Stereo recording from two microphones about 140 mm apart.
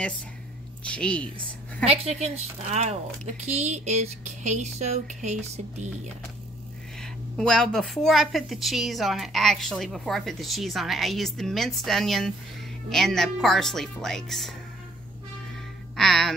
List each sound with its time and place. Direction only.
0.9 s speech: 5° left (ahead or behind)
1.9 s speech: 50° right (ahead or behind)
7.0 s a woman's voice: 5° left (ahead or behind)
16.0 s a woman's voice: centre (ahead or behind)